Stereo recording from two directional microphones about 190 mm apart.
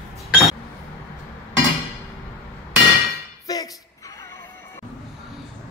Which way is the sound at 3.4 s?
20° left (ahead or behind).